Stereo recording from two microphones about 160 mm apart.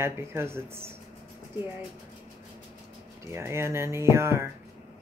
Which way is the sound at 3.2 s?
15° right (ahead or behind).